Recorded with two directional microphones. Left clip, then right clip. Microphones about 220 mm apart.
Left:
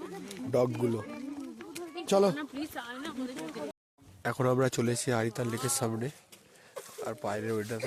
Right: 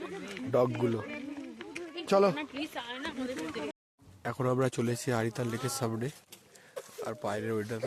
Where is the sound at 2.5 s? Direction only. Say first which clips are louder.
Right 1 dB; 55° left (ahead or behind).